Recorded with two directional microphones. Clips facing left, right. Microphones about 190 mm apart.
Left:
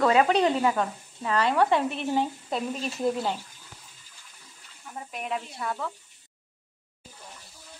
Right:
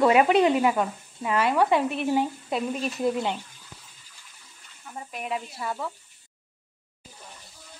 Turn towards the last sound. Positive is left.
turn(degrees=-5)  # may be behind; listen again after turning